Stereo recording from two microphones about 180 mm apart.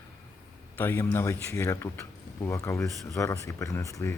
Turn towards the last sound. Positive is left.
turn(degrees=15)  # may be behind; listen again after turning